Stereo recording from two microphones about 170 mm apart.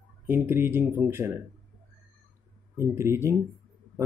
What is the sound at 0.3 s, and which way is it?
Speech, 15° right (ahead or behind).